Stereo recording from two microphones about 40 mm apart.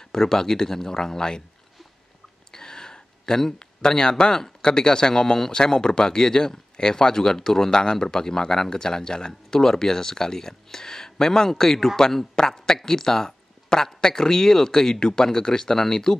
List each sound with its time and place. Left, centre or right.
0.0 s speech: centre
2.5 s speech: centre